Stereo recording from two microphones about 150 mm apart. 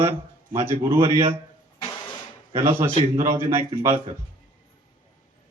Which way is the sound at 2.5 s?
15° right (ahead or behind).